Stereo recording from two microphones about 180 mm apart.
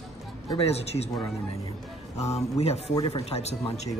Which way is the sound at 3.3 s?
35° left (ahead or behind).